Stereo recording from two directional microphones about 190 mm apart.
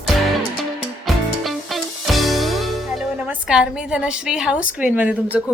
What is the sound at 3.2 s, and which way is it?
A woman's voice, 5° right (ahead or behind).